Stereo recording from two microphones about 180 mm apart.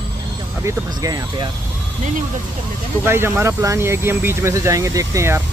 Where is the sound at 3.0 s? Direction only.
15° right (ahead or behind).